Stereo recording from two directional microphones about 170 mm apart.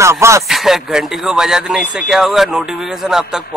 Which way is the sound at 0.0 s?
15° right (ahead or behind).